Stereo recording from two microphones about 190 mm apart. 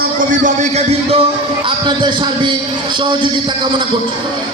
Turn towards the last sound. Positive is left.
turn(degrees=-25)  # may be behind; listen again after turning